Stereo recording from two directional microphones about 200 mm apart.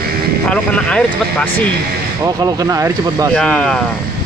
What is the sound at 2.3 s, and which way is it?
Speech, 20° right (ahead or behind).